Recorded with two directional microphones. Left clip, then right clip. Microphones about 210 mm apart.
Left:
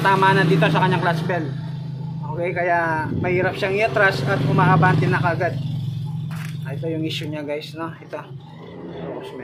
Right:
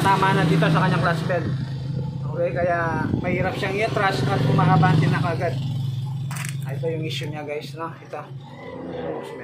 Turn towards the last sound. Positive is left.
turn(degrees=50)  # may be behind; listen again after turning